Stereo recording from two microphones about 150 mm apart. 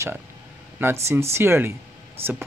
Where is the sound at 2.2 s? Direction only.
40° right (ahead or behind).